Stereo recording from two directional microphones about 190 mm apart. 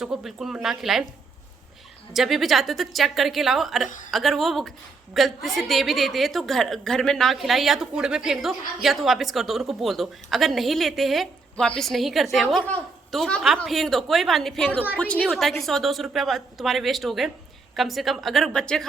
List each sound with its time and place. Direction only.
0.0 s a woman's voice: centre (ahead or behind)
2.1 s a woman's voice: centre (ahead or behind)
3.8 s a woman's voice: 40° left (ahead or behind)
4.1 s a woman's voice: centre (ahead or behind)